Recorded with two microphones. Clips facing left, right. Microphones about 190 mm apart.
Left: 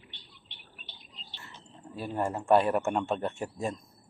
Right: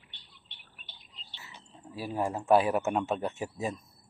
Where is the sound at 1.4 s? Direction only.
5° right (ahead or behind).